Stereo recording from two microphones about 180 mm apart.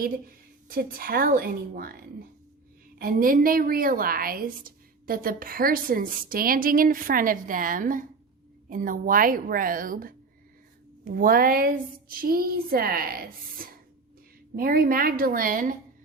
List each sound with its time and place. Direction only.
0.0 s a woman's voice: 50° right (ahead or behind)